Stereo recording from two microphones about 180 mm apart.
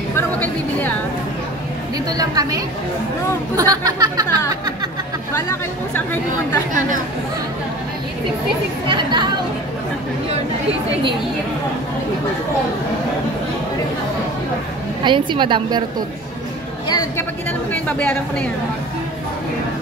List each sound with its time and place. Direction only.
0.1 s a sound: 10° left (ahead or behind)
2.0 s speech: 20° right (ahead or behind)
5.3 s speech: 15° left (ahead or behind)
8.8 s speech: 25° right (ahead or behind)
15.0 s speech: 25° right (ahead or behind)
16.8 s a woman's voice: 20° left (ahead or behind)
17.5 s speech: 10° left (ahead or behind)